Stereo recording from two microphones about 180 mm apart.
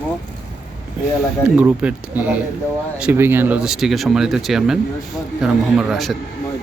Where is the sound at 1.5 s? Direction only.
10° right (ahead or behind).